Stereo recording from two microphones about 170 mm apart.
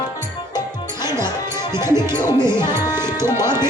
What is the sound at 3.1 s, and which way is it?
Music, 25° left (ahead or behind).